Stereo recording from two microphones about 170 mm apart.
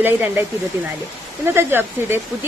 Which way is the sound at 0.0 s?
10° right (ahead or behind).